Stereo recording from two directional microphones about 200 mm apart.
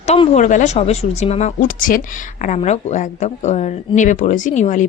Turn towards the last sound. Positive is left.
turn(degrees=40)  # may be behind; listen again after turning